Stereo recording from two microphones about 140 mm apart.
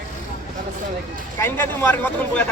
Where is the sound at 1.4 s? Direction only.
15° left (ahead or behind).